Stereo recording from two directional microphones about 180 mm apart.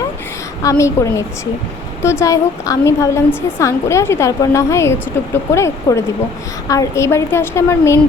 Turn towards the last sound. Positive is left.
turn(degrees=15)  # may be behind; listen again after turning